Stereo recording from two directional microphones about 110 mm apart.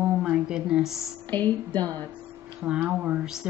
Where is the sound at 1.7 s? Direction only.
35° right (ahead or behind).